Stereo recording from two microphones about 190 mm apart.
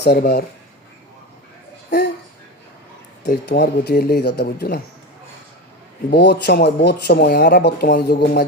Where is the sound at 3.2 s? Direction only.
55° left (ahead or behind).